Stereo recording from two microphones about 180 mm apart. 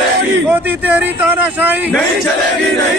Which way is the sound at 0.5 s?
10° right (ahead or behind).